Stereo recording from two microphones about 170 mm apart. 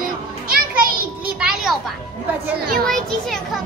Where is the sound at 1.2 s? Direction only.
5° right (ahead or behind).